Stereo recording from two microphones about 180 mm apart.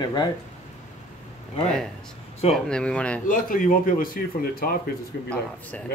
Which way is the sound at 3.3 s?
50° left (ahead or behind).